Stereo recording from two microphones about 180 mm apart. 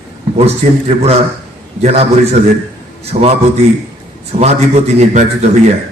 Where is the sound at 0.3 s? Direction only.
35° right (ahead or behind).